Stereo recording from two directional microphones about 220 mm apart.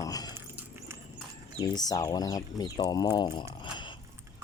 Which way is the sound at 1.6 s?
20° left (ahead or behind).